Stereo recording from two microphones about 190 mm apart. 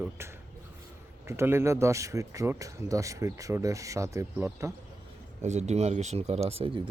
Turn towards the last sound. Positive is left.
turn(degrees=-30)  # may be behind; listen again after turning